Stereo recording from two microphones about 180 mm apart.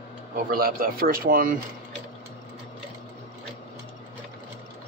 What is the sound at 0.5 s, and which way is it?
A man's voice, 55° right (ahead or behind).